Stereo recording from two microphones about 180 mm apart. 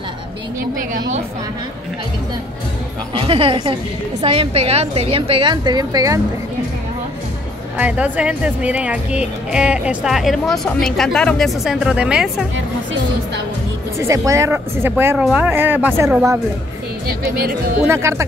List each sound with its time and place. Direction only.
0.7 s a woman's voice: 50° right (ahead or behind)
3.2 s a woman's voice: 30° right (ahead or behind)
7.7 s speech: 10° right (ahead or behind)
13.9 s speech: 15° right (ahead or behind)
17.8 s speech: 15° right (ahead or behind)